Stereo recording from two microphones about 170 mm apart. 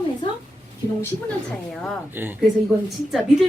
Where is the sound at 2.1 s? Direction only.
10° right (ahead or behind).